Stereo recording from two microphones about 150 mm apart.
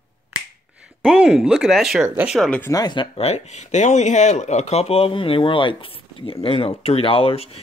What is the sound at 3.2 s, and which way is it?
Speech, 45° left (ahead or behind).